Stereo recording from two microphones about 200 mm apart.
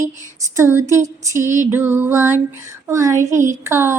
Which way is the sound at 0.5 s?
15° right (ahead or behind).